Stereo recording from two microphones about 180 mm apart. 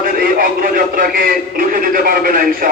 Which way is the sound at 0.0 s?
50° right (ahead or behind).